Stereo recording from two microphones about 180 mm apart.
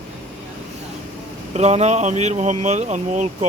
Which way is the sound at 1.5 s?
35° right (ahead or behind).